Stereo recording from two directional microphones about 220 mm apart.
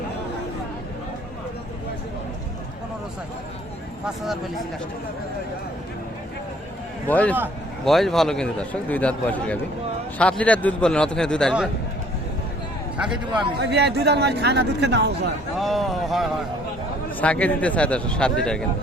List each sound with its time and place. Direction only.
4.0 s a man's voice: centre (ahead or behind)
7.1 s a man's voice: 5° left (ahead or behind)
13.6 s speech: 50° right (ahead or behind)
15.5 s a man's voice: centre (ahead or behind)